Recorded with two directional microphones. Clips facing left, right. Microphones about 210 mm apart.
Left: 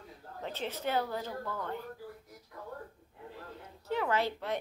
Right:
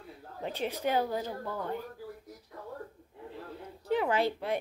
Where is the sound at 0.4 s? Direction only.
15° right (ahead or behind).